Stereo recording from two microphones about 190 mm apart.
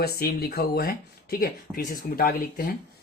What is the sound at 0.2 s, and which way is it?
Speech, 55° left (ahead or behind).